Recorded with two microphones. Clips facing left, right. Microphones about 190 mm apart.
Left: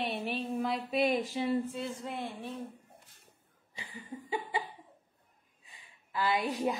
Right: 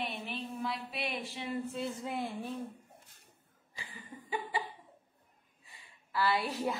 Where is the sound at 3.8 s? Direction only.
25° left (ahead or behind).